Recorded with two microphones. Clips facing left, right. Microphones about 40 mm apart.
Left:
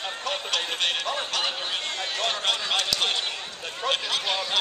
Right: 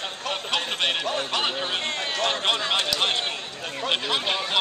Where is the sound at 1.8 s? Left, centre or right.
Right.